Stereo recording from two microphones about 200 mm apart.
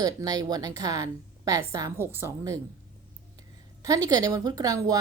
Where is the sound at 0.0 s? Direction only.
20° right (ahead or behind).